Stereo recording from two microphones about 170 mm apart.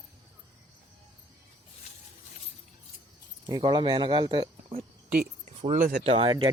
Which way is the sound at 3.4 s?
25° right (ahead or behind).